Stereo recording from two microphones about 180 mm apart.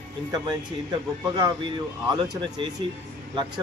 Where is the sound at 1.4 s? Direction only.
25° right (ahead or behind).